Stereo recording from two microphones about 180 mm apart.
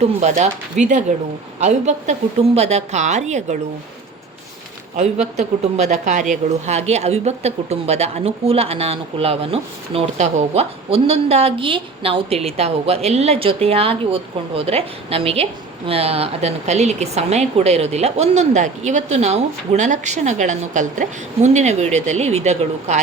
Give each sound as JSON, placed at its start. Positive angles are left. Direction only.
{"t": 0.0, "sound": "speech", "side_deg": -40}
{"t": 4.9, "sound": "speech", "side_deg": -40}